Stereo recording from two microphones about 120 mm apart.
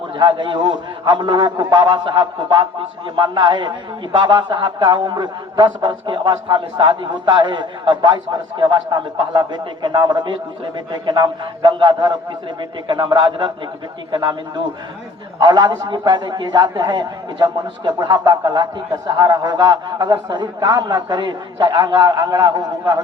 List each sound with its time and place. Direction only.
0.2 s a man's voice: 40° right (ahead or behind)